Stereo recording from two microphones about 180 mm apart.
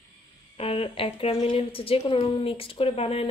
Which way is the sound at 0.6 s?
30° left (ahead or behind).